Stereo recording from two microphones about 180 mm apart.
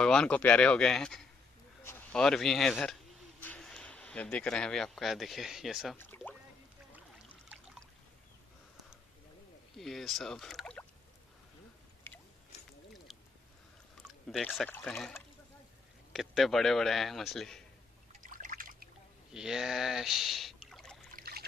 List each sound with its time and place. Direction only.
0.0 s a man's voice: 5° left (ahead or behind)
5.9 s speech: 10° left (ahead or behind)
9.8 s a man's voice: centre (ahead or behind)
12.1 s biting: 15° left (ahead or behind)
14.3 s a man's voice: 5° left (ahead or behind)
18.3 s trickle: 50° right (ahead or behind)
19.3 s speech: 5° right (ahead or behind)
21.2 s trickle: 55° right (ahead or behind)